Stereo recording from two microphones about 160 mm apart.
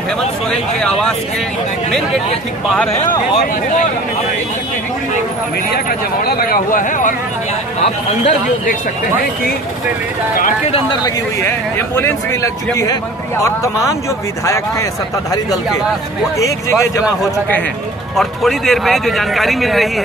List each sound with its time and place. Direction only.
6.2 s a man's voice: 65° left (ahead or behind); by 8.7 s 45° left (ahead or behind)
11.4 s speech: 15° left (ahead or behind)
14.4 s speech: 20° left (ahead or behind)
16.3 s speech: 20° left (ahead or behind)
18.1 s speech: centre (ahead or behind)